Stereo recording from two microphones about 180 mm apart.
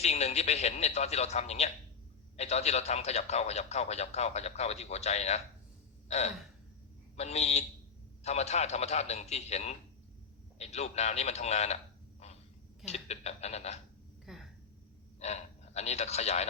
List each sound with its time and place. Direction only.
0.0 s a man's voice: 35° left (ahead or behind)
6.1 s gasp: 40° left (ahead or behind)
7.2 s a man's voice: 35° left (ahead or behind)
12.2 s a sound: 35° left (ahead or behind)
12.8 s a man's voice: 35° left (ahead or behind)
14.3 s a sound: centre (ahead or behind)
15.2 s speech: 35° left (ahead or behind)